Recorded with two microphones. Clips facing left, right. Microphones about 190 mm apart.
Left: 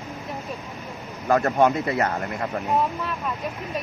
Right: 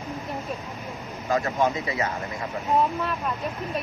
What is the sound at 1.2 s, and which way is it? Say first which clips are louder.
Speech: left 5 dB; 55° left (ahead or behind).